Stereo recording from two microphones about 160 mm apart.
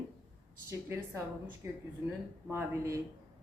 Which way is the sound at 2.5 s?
15° right (ahead or behind).